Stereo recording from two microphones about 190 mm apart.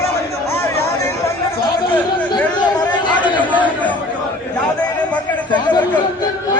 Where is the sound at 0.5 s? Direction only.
15° left (ahead or behind).